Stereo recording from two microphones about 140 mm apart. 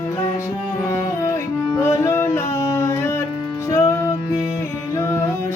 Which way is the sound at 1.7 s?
20° left (ahead or behind).